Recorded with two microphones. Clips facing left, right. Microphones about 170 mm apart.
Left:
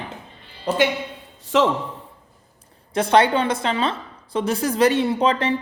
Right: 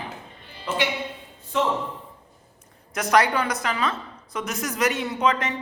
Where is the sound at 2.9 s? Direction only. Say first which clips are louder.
Left 4 dB; 30° left (ahead or behind).